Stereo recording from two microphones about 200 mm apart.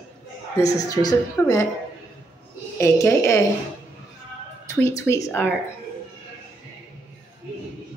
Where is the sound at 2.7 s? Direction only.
15° left (ahead or behind).